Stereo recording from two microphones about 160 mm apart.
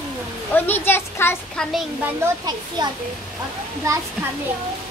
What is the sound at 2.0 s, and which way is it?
Speech, 20° right (ahead or behind).